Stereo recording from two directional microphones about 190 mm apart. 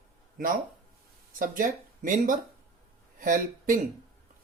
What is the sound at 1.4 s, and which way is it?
Speech, 45° right (ahead or behind).